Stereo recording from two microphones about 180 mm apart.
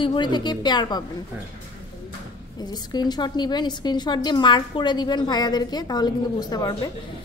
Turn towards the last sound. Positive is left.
turn(degrees=20)  # may be behind; listen again after turning